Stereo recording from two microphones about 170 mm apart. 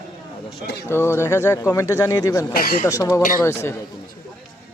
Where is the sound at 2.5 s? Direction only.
60° left (ahead or behind).